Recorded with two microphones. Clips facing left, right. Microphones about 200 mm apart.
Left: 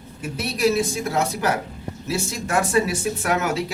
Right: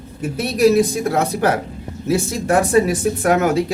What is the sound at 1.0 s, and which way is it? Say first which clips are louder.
Speech: right 4 dB; 55° right (ahead or behind).